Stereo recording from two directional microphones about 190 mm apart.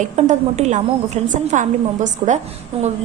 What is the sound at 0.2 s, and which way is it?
A woman's voice, 35° right (ahead or behind).